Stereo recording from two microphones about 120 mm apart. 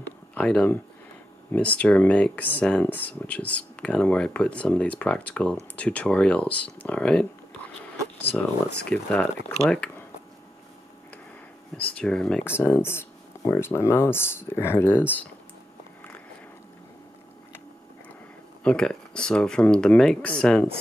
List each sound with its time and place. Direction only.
0.3 s speech: 10° left (ahead or behind)
8.7 s speech: 10° left (ahead or behind)
12.0 s speech: 5° left (ahead or behind)
12.4 s speech: 20° left (ahead or behind)
18.6 s speech: 5° left (ahead or behind)